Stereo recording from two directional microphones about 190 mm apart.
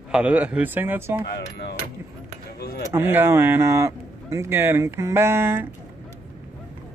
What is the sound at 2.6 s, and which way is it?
Speech, 55° left (ahead or behind).